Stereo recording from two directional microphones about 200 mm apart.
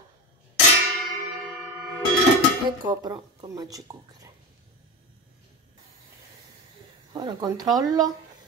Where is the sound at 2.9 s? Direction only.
20° right (ahead or behind).